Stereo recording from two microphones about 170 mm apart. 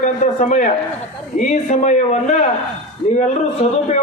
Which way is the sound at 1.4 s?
45° left (ahead or behind).